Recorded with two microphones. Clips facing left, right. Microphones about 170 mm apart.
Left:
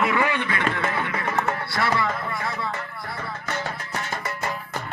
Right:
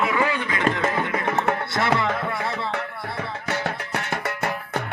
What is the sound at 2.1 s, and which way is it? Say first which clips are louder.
Music: right 3 dB; 65° right (ahead or behind).